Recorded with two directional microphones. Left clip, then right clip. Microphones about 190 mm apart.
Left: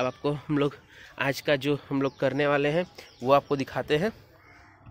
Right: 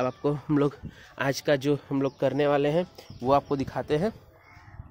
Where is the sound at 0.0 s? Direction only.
15° right (ahead or behind).